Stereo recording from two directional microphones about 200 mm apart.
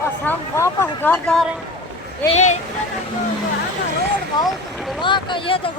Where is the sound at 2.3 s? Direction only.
35° left (ahead or behind).